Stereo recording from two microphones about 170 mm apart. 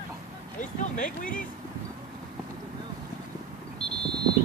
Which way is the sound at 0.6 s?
50° left (ahead or behind).